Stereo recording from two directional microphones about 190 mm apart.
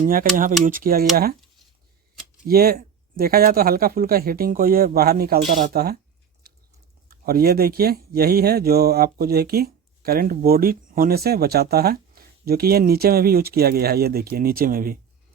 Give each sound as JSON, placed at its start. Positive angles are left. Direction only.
{"t": 0.0, "sound": "speech", "side_deg": -45}
{"t": 2.5, "sound": "speech", "side_deg": -55}
{"t": 6.4, "sound": "a sound", "side_deg": -55}
{"t": 7.1, "sound": "speech", "side_deg": -50}